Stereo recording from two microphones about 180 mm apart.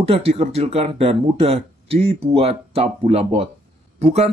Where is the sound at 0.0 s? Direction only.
35° right (ahead or behind).